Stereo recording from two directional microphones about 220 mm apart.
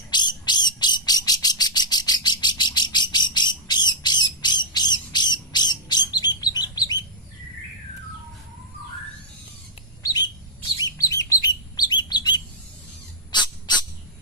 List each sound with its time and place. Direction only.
0.1 s bird: 20° left (ahead or behind)
10.0 s bird: 15° left (ahead or behind)
10.8 s chirp: 15° left (ahead or behind)
13.3 s owl: 20° left (ahead or behind)